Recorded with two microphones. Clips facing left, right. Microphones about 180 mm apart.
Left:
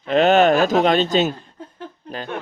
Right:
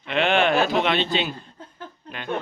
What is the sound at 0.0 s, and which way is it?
Speech, 40° left (ahead or behind).